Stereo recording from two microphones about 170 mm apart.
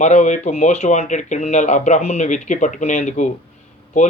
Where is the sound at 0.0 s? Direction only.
45° left (ahead or behind).